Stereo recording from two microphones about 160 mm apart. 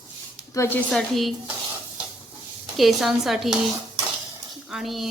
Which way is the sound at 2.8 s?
Centre (ahead or behind).